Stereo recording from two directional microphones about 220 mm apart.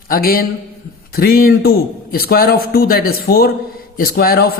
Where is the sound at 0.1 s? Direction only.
40° left (ahead or behind).